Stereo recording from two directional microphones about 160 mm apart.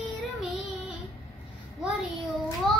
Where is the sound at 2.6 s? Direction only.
Centre (ahead or behind).